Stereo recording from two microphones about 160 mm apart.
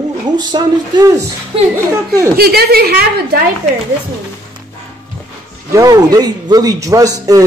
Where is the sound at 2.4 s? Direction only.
75° right (ahead or behind).